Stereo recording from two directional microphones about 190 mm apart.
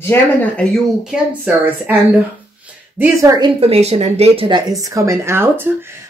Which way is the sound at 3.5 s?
35° right (ahead or behind).